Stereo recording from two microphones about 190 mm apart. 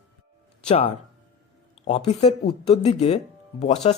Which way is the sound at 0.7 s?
30° left (ahead or behind).